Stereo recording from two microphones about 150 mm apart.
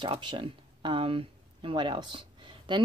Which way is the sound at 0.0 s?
30° right (ahead or behind).